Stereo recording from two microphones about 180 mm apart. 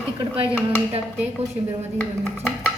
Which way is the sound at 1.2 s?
5° right (ahead or behind).